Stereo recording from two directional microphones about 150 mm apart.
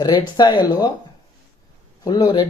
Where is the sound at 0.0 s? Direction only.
25° left (ahead or behind).